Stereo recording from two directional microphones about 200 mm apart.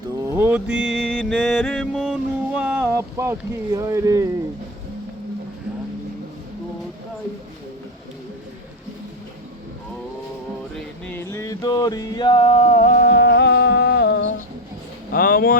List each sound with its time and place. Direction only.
0.3 s music: 10° right (ahead or behind)
2.6 s boat: 5° right (ahead or behind)
10.8 s music: 5° left (ahead or behind); by 14.3 s 55° left (ahead or behind)
15.1 s speech: 45° left (ahead or behind)